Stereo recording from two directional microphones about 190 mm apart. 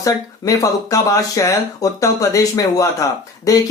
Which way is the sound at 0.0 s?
15° left (ahead or behind).